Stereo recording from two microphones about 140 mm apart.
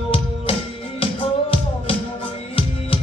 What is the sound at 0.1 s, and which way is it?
Music, 40° left (ahead or behind).